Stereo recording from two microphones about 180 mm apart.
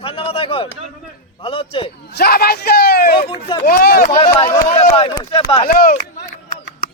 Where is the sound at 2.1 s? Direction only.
60° left (ahead or behind).